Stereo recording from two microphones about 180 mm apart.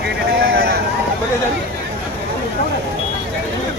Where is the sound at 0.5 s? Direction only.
60° right (ahead or behind).